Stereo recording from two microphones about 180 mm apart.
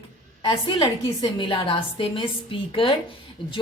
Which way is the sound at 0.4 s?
25° left (ahead or behind).